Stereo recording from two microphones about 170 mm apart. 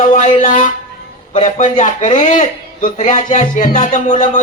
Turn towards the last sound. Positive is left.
turn(degrees=45)  # may be behind; listen again after turning